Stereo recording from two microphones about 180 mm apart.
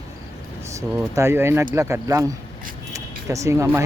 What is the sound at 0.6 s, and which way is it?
Speech, 15° right (ahead or behind).